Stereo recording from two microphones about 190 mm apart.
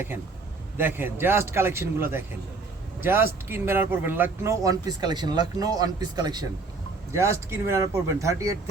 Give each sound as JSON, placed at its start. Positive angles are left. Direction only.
{"t": 0.8, "sound": "speech", "side_deg": -10}